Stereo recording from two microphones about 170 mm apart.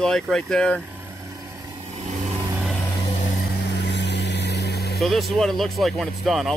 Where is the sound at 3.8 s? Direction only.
90° left; by 5.0 s 70° left (ahead or behind).